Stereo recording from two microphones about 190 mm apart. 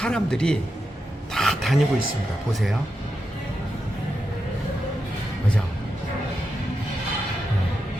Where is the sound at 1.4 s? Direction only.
Centre (ahead or behind).